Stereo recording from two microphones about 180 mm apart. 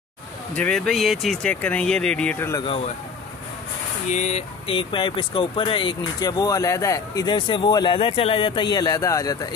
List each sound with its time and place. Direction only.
0.5 s speech: 5° left (ahead or behind)
4.1 s speech: 40° left (ahead or behind); by 9.5 s 20° left (ahead or behind)